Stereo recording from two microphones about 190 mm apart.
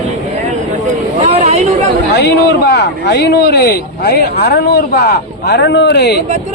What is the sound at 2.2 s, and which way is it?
Speech, 55° left (ahead or behind).